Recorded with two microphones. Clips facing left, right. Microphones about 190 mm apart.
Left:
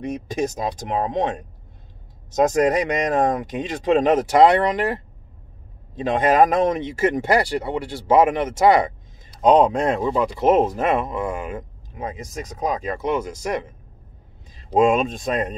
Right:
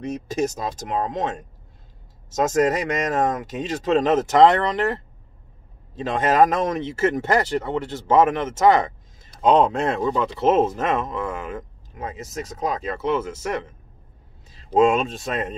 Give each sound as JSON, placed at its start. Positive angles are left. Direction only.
{"t": 0.0, "sound": "speech", "side_deg": 15}
{"t": 2.4, "sound": "speech", "side_deg": 15}
{"t": 5.9, "sound": "speech", "side_deg": 15}